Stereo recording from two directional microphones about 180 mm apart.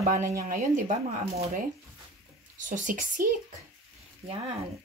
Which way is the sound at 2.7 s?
50° right (ahead or behind).